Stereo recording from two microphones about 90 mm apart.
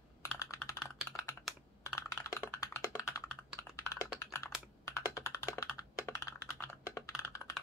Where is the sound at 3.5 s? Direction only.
35° left (ahead or behind).